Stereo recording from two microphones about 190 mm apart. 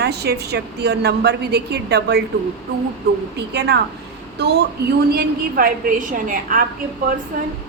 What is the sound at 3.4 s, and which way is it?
Speech, 60° right (ahead or behind).